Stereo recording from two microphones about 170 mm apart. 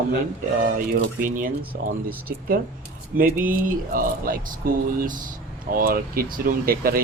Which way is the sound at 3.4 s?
55° right (ahead or behind).